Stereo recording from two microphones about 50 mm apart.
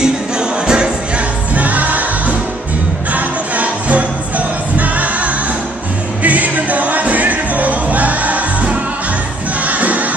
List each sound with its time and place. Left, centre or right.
0.0 s music: centre
1.5 s music: right